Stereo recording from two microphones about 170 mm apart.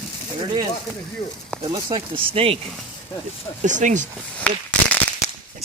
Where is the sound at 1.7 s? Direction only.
30° right (ahead or behind).